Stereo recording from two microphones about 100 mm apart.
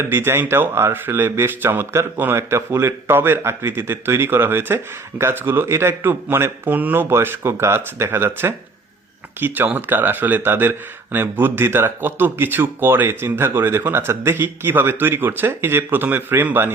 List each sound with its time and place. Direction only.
0.0 s speech: 20° right (ahead or behind)